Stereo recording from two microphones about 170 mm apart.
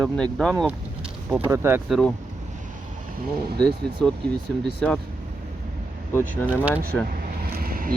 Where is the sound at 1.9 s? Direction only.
5° left (ahead or behind).